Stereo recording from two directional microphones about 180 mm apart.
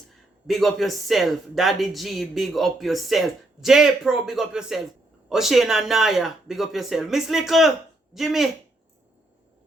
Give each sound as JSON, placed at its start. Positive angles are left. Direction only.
{"t": 0.4, "sound": "speech", "side_deg": 0}